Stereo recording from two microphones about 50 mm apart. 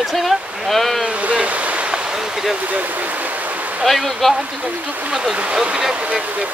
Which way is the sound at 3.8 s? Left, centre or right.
Centre.